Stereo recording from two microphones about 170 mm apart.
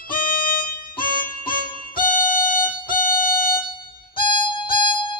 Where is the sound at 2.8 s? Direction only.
55° left (ahead or behind).